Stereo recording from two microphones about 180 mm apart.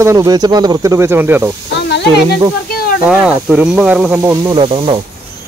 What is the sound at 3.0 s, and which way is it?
Speech, 5° right (ahead or behind).